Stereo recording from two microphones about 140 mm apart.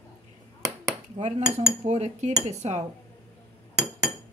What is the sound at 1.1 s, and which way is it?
Cutlery, 55° right (ahead or behind).